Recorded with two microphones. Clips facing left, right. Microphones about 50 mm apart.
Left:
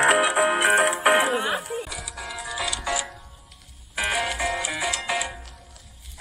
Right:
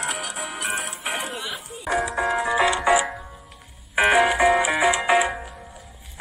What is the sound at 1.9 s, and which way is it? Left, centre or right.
Music, right.